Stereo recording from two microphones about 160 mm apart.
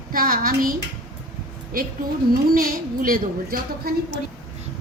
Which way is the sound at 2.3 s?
65° right (ahead or behind).